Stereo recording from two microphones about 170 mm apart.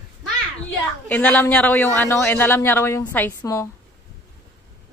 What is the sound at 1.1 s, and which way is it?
A man's voice, 5° left (ahead or behind).